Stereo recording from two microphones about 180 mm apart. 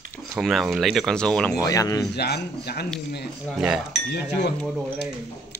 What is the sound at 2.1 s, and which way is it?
Speech, 65° left (ahead or behind).